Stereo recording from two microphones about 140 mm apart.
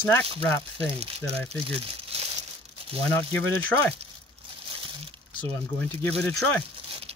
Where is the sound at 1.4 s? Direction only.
45° right (ahead or behind).